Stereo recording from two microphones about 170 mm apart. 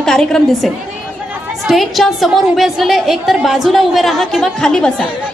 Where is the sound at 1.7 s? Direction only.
Centre (ahead or behind).